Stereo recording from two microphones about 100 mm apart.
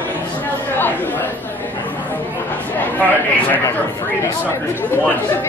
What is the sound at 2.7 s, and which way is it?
Speech, 20° left (ahead or behind).